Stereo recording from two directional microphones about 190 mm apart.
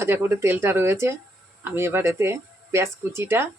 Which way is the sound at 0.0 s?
15° right (ahead or behind).